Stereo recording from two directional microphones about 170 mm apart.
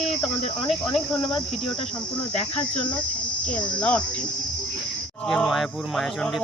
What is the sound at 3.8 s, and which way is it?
Cricket, 5° left (ahead or behind).